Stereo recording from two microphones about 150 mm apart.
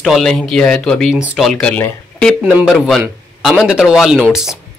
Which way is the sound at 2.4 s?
Centre (ahead or behind).